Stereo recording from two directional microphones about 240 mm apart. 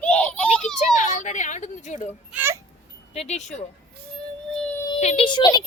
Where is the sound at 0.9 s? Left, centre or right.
Left.